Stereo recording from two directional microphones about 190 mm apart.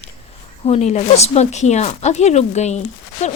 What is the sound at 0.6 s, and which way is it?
A woman's voice, 35° left (ahead or behind).